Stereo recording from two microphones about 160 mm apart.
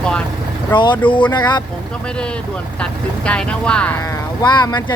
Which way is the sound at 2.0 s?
5° left (ahead or behind).